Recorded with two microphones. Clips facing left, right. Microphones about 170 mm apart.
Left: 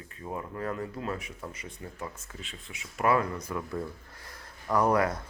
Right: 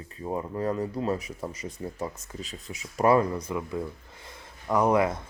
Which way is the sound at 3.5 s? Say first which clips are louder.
Right 3 dB; 20° right (ahead or behind).